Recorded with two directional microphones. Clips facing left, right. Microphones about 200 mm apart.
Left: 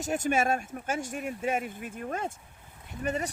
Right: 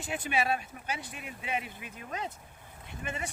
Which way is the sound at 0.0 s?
45° left (ahead or behind).